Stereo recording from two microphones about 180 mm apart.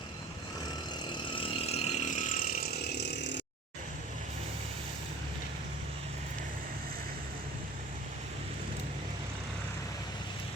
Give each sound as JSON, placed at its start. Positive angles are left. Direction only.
{"t": 1.4, "sound": "engine", "side_deg": 30}